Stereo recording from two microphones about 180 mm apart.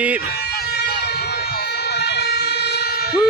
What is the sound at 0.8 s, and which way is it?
Vehicle, 60° left (ahead or behind).